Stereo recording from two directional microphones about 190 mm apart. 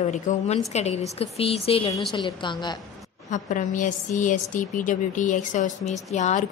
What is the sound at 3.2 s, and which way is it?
A woman's voice, 40° left (ahead or behind).